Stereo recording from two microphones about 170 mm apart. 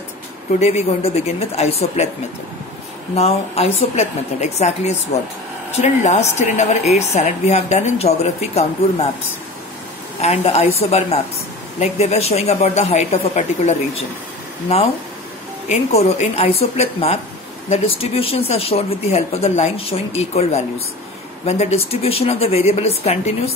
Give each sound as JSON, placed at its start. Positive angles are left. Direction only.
{"t": 0.6, "sound": "a woman's voice", "side_deg": 40}
{"t": 3.2, "sound": "a woman's voice", "side_deg": 35}
{"t": 10.2, "sound": "a woman's voice", "side_deg": 40}
{"t": 15.7, "sound": "a woman's voice", "side_deg": 40}